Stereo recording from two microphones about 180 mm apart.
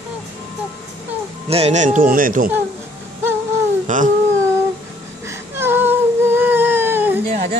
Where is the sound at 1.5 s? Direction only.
40° right (ahead or behind).